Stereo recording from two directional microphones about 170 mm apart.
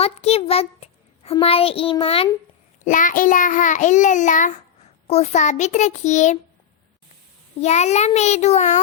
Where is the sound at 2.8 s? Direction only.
50° left (ahead or behind).